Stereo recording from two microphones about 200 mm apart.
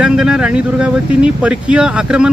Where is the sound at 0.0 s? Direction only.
5° right (ahead or behind).